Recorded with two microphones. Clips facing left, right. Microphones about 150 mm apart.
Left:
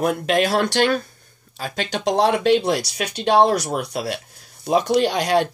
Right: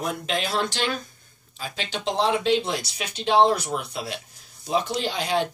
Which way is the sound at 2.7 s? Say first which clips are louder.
Left 7 dB; 75° left (ahead or behind).